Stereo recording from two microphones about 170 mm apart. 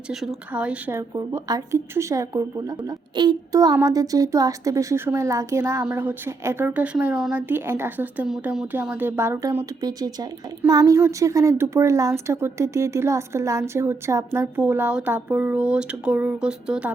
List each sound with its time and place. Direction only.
0.1 s a woman's voice: centre (ahead or behind)